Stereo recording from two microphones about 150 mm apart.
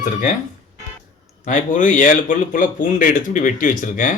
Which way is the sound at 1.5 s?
60° left (ahead or behind).